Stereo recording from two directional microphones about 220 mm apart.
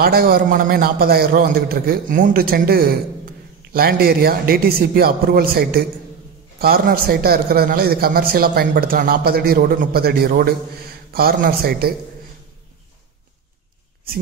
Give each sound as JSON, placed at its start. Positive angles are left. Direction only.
{"t": 0.0, "sound": "speech", "side_deg": -45}